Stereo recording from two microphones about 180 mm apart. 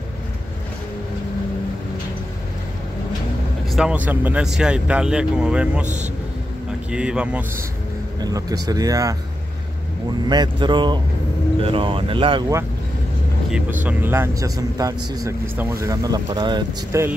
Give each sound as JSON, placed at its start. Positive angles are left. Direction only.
{"t": 3.7, "sound": "speech", "side_deg": -5}
{"t": 6.9, "sound": "speech", "side_deg": -5}
{"t": 8.2, "sound": "speech", "side_deg": -20}
{"t": 10.2, "sound": "speech", "side_deg": -25}
{"t": 13.8, "sound": "speech", "side_deg": -10}